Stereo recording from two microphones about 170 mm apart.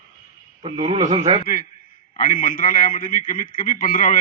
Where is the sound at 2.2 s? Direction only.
50° left (ahead or behind).